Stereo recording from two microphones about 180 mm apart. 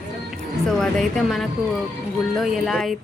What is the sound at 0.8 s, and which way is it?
A woman's voice, centre (ahead or behind).